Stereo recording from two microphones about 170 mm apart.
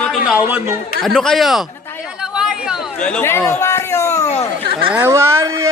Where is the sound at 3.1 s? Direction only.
15° left (ahead or behind).